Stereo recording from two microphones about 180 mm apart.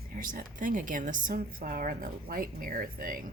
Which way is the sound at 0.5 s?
50° right (ahead or behind).